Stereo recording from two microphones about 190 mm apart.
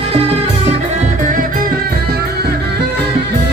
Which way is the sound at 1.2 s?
45° right (ahead or behind).